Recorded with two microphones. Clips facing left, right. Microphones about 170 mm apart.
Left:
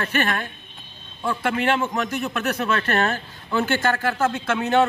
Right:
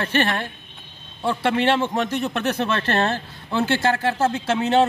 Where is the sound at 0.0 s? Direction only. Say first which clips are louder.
Right 2 dB; 30° right (ahead or behind).